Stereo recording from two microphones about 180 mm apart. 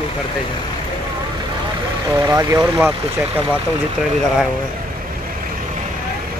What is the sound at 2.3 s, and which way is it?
Speech, 15° right (ahead or behind).